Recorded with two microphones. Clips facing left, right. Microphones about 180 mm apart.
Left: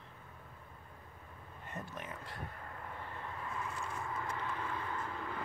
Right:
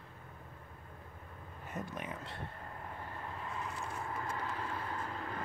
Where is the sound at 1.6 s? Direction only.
15° right (ahead or behind).